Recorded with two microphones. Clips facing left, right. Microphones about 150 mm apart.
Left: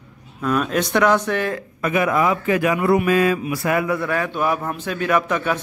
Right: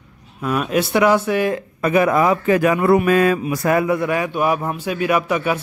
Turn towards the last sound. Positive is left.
turn(degrees=-10)  # may be behind; listen again after turning